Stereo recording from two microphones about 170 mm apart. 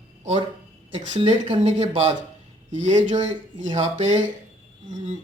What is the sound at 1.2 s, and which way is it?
Speech, 35° right (ahead or behind).